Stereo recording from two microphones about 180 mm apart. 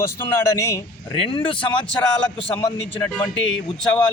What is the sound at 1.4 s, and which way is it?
Speech, 30° left (ahead or behind).